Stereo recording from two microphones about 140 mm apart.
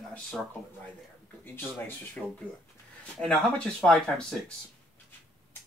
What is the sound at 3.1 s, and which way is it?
Speech, 5° left (ahead or behind).